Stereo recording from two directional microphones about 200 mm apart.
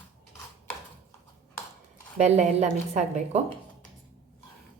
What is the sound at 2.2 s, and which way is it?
A woman's voice, 35° right (ahead or behind).